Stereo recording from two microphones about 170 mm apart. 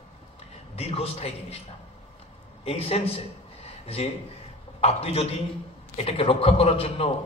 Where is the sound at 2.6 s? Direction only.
35° left (ahead or behind).